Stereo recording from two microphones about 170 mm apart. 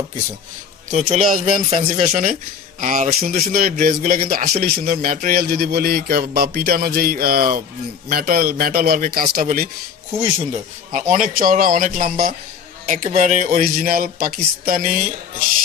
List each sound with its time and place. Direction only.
0.9 s speech: 45° right (ahead or behind)
1.4 s speech: 35° right (ahead or behind)
2.8 s a sound: 50° right (ahead or behind)
10.9 s speech: 45° right (ahead or behind)